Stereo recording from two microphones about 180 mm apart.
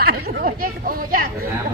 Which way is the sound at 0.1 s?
55° right (ahead or behind).